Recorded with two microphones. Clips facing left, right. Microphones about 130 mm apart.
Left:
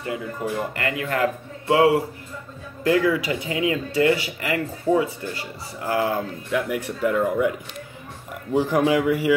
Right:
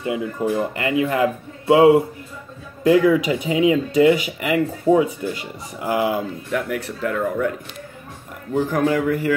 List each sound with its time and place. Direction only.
0.0 s speech: 20° right (ahead or behind)
6.7 s speech: 10° left (ahead or behind)
8.5 s speech: 10° left (ahead or behind)